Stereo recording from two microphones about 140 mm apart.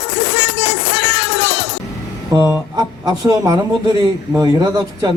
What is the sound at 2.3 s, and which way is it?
A man's voice, 25° right (ahead or behind).